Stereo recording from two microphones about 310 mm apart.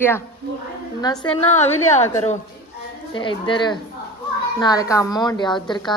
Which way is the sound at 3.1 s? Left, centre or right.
Centre.